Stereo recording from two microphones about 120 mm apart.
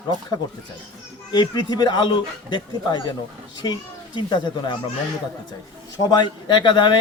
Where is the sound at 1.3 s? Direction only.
35° left (ahead or behind).